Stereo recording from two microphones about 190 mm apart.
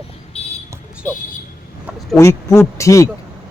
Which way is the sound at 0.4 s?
35° left (ahead or behind).